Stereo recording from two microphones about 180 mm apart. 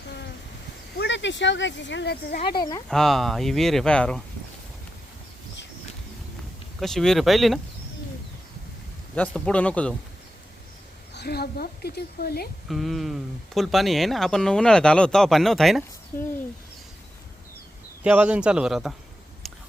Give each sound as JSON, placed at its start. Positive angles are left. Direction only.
{"t": 0.9, "sound": "speech", "side_deg": 80}
{"t": 2.4, "sound": "speech", "side_deg": 25}
{"t": 2.9, "sound": "speech", "side_deg": 0}
{"t": 6.7, "sound": "speech", "side_deg": 0}
{"t": 9.1, "sound": "a man's voice", "side_deg": 5}
{"t": 11.1, "sound": "a woman's voice", "side_deg": 65}
{"t": 12.6, "sound": "speech", "side_deg": 0}
{"t": 16.1, "sound": "a man's voice", "side_deg": 15}
{"t": 18.0, "sound": "speech", "side_deg": -5}
{"t": 19.4, "sound": "a sound", "side_deg": 0}